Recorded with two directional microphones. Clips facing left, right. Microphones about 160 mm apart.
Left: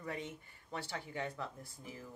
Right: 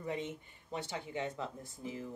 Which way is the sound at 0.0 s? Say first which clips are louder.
Right 4 dB; 20° right (ahead or behind).